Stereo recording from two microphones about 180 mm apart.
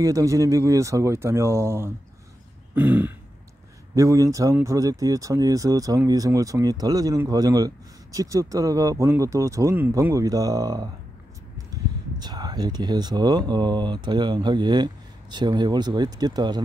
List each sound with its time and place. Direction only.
0.0 s speech: 20° right (ahead or behind)